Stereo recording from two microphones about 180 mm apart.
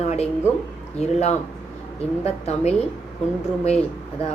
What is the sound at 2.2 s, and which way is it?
Speech, 35° left (ahead or behind).